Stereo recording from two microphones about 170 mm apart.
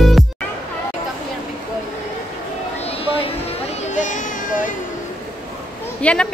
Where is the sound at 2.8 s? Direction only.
35° left (ahead or behind); by 4.7 s 50° left (ahead or behind).